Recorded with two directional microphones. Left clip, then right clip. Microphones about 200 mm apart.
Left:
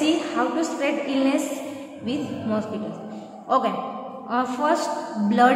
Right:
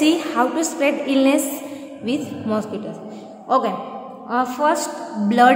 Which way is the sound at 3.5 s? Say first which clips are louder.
Right 3 dB; 20° right (ahead or behind).